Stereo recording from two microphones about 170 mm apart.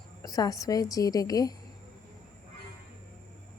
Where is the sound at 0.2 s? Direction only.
20° left (ahead or behind).